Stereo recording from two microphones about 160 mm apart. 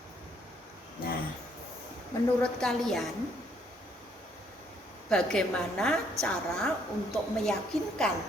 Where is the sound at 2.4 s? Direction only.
5° left (ahead or behind).